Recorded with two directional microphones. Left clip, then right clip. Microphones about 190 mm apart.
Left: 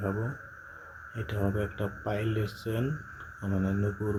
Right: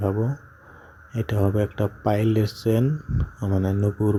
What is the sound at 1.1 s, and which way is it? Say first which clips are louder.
Speech: right 8 dB; 35° right (ahead or behind).